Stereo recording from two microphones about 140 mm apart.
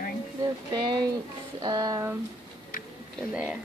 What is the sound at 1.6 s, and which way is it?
Speech, 25° right (ahead or behind).